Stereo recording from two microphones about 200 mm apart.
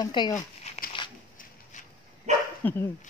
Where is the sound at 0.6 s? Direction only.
35° left (ahead or behind).